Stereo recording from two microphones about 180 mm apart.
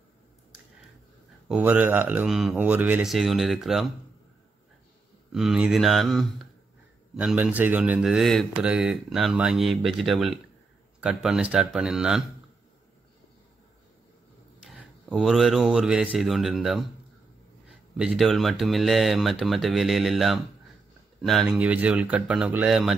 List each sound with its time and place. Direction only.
1.5 s speech: 10° right (ahead or behind)
5.3 s speech: 5° right (ahead or behind)
15.1 s speech: centre (ahead or behind)